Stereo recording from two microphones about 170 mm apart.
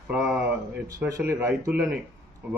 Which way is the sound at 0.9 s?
15° right (ahead or behind).